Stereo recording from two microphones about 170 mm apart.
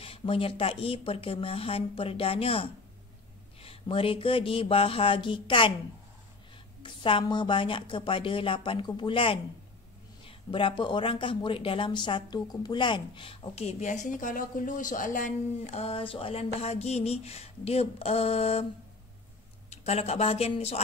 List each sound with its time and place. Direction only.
0.0 s speech: 35° left (ahead or behind)
6.8 s a woman's voice: 30° left (ahead or behind)
19.7 s speech: 40° left (ahead or behind)